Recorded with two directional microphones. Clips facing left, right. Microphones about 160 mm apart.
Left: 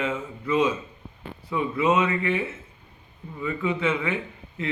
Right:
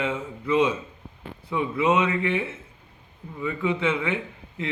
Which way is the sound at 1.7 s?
10° right (ahead or behind).